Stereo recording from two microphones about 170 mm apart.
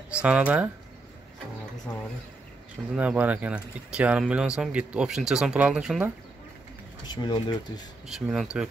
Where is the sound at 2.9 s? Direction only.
5° right (ahead or behind).